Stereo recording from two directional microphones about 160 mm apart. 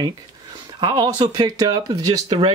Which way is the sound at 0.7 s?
25° right (ahead or behind).